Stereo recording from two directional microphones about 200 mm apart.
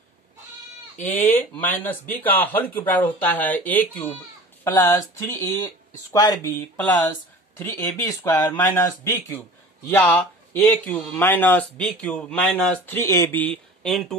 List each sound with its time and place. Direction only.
1.0 s speech: 10° left (ahead or behind)
7.5 s speech: 15° left (ahead or behind)